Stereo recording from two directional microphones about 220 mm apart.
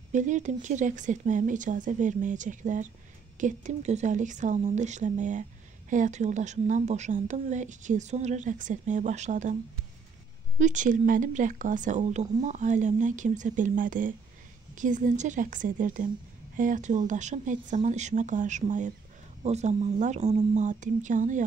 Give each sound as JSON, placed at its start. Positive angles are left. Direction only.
{"t": 0.1, "sound": "speech", "side_deg": -35}
{"t": 10.6, "sound": "speech", "side_deg": -35}